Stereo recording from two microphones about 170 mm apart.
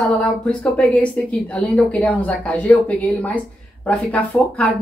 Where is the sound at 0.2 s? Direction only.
5° left (ahead or behind).